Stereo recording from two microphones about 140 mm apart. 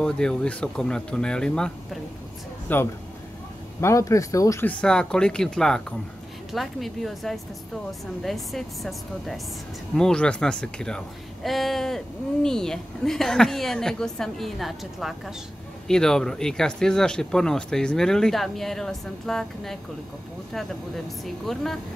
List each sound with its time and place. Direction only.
0.0 s speech: 5° left (ahead or behind); by 4.6 s 25° left (ahead or behind)
4.6 s speech: 5° left (ahead or behind)
21.2 s speech: centre (ahead or behind)